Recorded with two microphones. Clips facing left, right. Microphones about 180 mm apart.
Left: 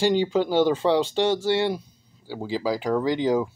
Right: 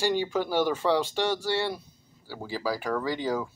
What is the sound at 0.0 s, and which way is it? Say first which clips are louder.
Speech: left 5 dB; 20° left (ahead or behind).